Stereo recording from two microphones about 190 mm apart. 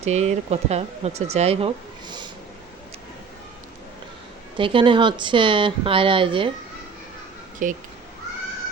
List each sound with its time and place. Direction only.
0.0 s speech: 35° right (ahead or behind)
4.5 s speech: 25° right (ahead or behind)
7.6 s speech: 45° right (ahead or behind)